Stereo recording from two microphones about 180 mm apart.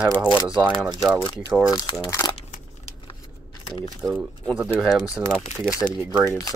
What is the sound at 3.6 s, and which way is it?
Speech, 30° left (ahead or behind).